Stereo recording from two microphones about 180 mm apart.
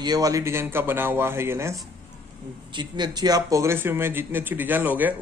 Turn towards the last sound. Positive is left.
turn(degrees=-10)  # may be behind; listen again after turning